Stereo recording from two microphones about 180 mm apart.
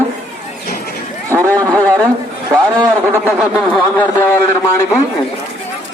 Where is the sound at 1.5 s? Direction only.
10° left (ahead or behind).